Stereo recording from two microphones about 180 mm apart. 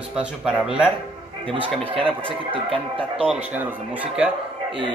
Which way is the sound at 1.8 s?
30° right (ahead or behind).